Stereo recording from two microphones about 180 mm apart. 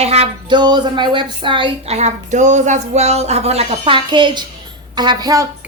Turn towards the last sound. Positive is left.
turn(degrees=-20)  # may be behind; listen again after turning